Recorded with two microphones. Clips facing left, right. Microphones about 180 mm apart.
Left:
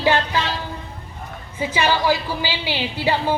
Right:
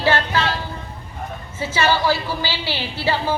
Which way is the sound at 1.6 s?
15° left (ahead or behind).